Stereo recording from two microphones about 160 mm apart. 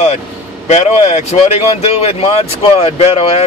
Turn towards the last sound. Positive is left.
turn(degrees=40)  # may be behind; listen again after turning